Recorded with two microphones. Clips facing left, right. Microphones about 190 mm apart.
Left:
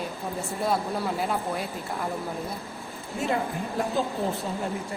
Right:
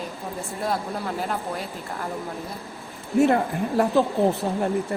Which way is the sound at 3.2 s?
65° right (ahead or behind).